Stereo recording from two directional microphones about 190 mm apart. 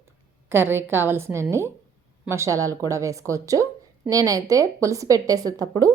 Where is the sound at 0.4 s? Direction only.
10° right (ahead or behind).